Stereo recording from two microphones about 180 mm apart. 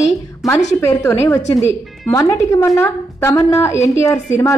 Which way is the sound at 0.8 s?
15° left (ahead or behind).